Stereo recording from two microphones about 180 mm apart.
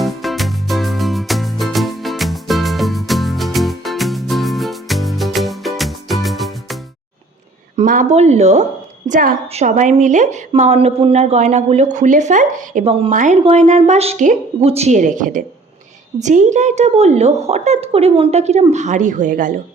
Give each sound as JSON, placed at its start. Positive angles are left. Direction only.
{"t": 0.0, "sound": "music", "side_deg": 0}
{"t": 7.8, "sound": "speech", "side_deg": -45}
{"t": 13.1, "sound": "speech", "side_deg": -45}